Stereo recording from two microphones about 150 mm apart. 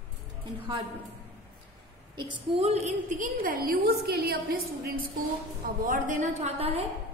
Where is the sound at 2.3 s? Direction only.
40° right (ahead or behind).